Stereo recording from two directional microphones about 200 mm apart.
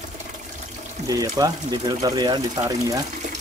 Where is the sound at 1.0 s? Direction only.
15° right (ahead or behind).